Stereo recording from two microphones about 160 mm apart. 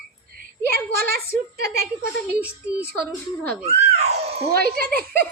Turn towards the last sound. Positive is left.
turn(degrees=-70)  # may be behind; listen again after turning